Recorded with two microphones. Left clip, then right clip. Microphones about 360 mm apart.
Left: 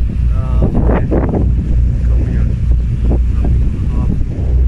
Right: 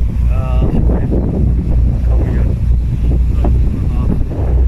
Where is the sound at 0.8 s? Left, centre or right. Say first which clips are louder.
Left 4 dB; left.